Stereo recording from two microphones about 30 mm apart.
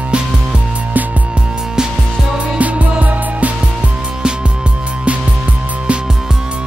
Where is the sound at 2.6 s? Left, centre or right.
Right.